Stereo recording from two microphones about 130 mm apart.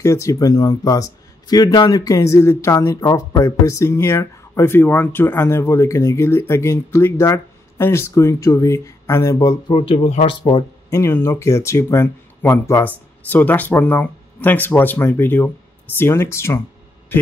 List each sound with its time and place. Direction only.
0.0 s speech: 25° left (ahead or behind)
9.7 s speech: 40° left (ahead or behind)
9.9 s speech: 65° left (ahead or behind)
10.9 s speech: 20° left (ahead or behind)